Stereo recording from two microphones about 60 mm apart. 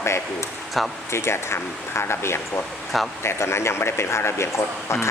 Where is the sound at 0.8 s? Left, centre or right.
Centre.